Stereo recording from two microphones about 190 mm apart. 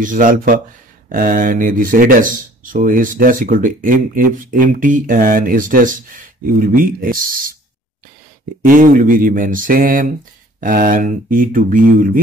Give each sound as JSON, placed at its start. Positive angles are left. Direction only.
{"t": 0.0, "sound": "speech", "side_deg": -45}
{"t": 8.6, "sound": "speech", "side_deg": -45}